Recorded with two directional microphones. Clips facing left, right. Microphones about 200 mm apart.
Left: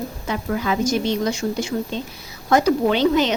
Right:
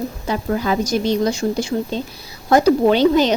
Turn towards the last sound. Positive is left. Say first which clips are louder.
# right 4 dB
turn(degrees=-35)  # may be behind; listen again after turning